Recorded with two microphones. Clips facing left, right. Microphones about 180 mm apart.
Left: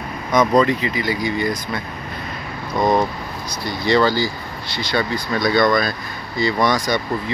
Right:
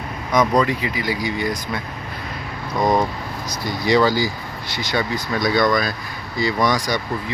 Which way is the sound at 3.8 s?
10° right (ahead or behind).